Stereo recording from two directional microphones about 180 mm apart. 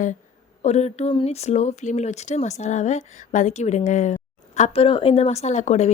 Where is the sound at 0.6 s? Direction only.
35° left (ahead or behind).